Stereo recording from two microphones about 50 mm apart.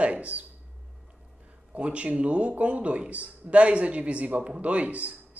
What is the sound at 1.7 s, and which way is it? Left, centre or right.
Speech, right.